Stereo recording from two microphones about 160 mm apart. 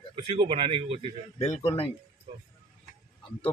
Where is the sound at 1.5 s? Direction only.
35° left (ahead or behind).